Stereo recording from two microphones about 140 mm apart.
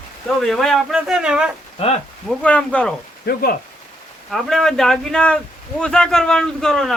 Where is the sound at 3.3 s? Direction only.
90° left.